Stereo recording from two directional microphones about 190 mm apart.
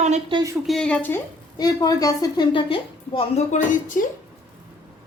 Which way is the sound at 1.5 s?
20° left (ahead or behind).